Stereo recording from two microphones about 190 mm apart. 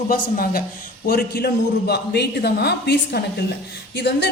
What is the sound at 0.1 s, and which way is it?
Speech, 50° left (ahead or behind).